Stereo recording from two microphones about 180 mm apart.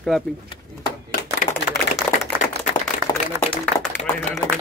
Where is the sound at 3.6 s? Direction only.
10° left (ahead or behind).